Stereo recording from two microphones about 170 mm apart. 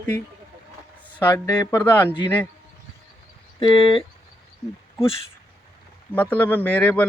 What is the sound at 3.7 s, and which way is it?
Speech, 35° left (ahead or behind).